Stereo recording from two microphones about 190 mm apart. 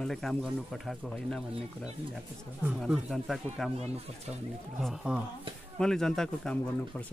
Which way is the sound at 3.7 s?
35° right (ahead or behind).